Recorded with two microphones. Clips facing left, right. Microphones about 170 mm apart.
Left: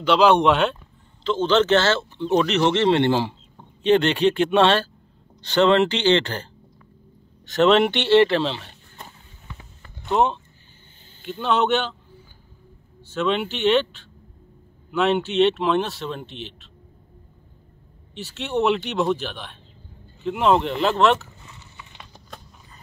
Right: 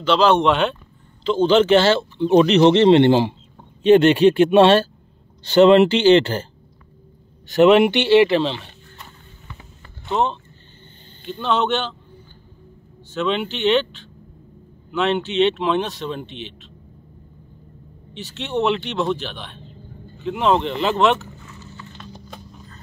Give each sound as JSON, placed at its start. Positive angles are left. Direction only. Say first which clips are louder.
{"t": 0.0, "sound": "speech", "louder": "even", "side_deg": 10}
{"t": 1.2, "sound": "speech", "louder": "right 4 dB", "side_deg": -10}
{"t": 7.5, "sound": "speech", "louder": "right 4 dB", "side_deg": -10}
{"t": 10.0, "sound": "speech", "louder": "left 1 dB", "side_deg": 5}
{"t": 13.1, "sound": "speech", "louder": "right 1 dB", "side_deg": 5}
{"t": 18.1, "sound": "speech", "louder": "right 1 dB", "side_deg": 5}
{"t": 21.5, "sound": "a sound", "louder": "right 6 dB", "side_deg": 15}